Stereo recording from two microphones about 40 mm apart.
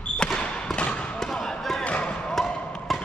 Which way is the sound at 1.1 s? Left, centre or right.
Centre.